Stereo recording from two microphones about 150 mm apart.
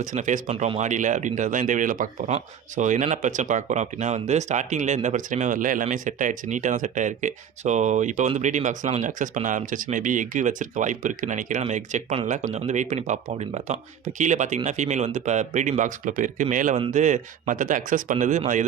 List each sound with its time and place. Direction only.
0.0 s speech: 55° right (ahead or behind)
0.5 s speech: 40° right (ahead or behind)
0.8 s speech: 55° right (ahead or behind)